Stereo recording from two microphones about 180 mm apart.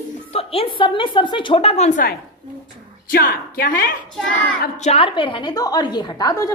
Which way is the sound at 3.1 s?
60° left (ahead or behind).